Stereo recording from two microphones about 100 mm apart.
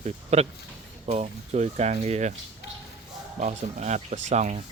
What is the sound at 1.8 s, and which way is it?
Speech, 90° right.